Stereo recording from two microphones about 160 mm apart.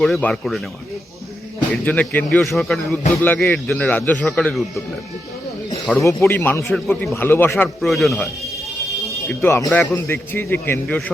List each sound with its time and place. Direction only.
0.0 s speech: 5° left (ahead or behind)
1.7 s a man's voice: 10° left (ahead or behind)
6.0 s a man's voice: 15° left (ahead or behind)
6.7 s speech: centre (ahead or behind)
7.0 s a man's voice: 15° left (ahead or behind)
7.8 s speech: centre (ahead or behind)
9.3 s a man's voice: 15° left (ahead or behind)